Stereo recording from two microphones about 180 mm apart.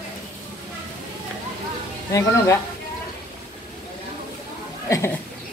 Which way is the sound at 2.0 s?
15° left (ahead or behind).